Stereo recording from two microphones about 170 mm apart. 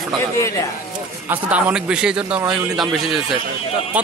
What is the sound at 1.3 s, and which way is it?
A man's voice, 5° right (ahead or behind).